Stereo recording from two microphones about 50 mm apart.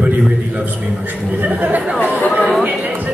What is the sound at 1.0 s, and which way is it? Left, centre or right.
Speech, right.